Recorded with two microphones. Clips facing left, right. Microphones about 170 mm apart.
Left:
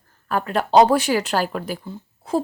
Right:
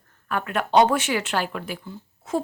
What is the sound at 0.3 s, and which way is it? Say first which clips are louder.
A woman's voice: left 4 dB; 35° left (ahead or behind).